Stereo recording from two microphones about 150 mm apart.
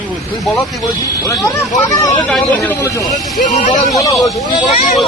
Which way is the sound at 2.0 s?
25° left (ahead or behind).